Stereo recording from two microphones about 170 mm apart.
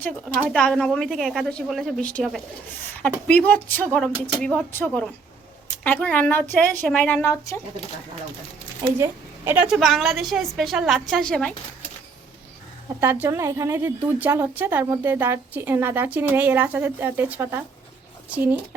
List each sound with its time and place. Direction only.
0.5 s a woman's voice: 5° left (ahead or behind)
9.0 s a woman's voice: 15° right (ahead or behind); by 11.5 s 5° left (ahead or behind)
13.0 s a woman's voice: 10° right (ahead or behind)